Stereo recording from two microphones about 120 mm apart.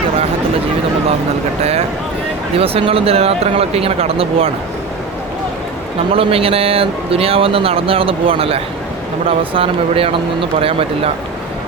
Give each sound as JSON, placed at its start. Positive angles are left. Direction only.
{"t": 2.6, "sound": "speech", "side_deg": -55}
{"t": 6.1, "sound": "speech", "side_deg": -50}